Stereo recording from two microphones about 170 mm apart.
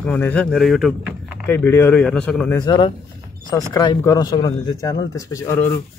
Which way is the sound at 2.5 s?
25° left (ahead or behind).